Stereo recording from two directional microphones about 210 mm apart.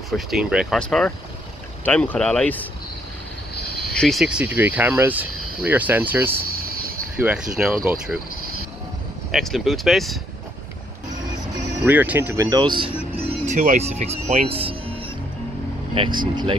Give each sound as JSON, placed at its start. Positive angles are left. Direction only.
{"t": 0.3, "sound": "speech", "side_deg": -5}
{"t": 3.9, "sound": "speech", "side_deg": 0}
{"t": 6.6, "sound": "a sound", "side_deg": -45}
{"t": 7.2, "sound": "speech", "side_deg": -5}
{"t": 9.3, "sound": "speech", "side_deg": 0}
{"t": 11.8, "sound": "speech", "side_deg": -10}